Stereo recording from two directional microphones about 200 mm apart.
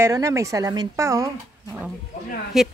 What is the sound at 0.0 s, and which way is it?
Speech, 15° right (ahead or behind).